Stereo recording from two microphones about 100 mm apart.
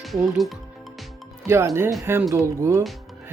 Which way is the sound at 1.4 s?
25° right (ahead or behind).